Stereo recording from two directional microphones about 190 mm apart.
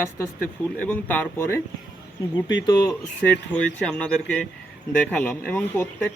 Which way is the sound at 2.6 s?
20° left (ahead or behind).